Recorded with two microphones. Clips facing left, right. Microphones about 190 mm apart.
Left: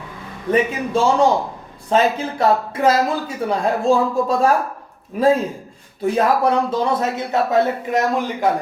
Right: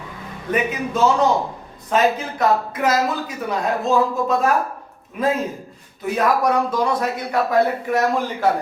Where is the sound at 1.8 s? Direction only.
30° left (ahead or behind).